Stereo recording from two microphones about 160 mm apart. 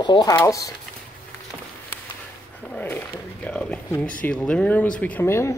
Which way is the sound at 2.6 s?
10° left (ahead or behind).